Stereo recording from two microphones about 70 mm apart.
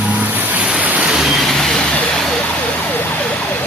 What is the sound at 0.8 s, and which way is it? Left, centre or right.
Vehicle, right.